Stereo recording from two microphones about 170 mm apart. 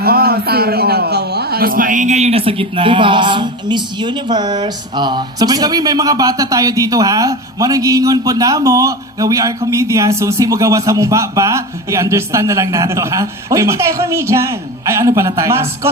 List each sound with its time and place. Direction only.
0.0 s a man's voice: 65° right (ahead or behind); by 15.9 s 15° right (ahead or behind)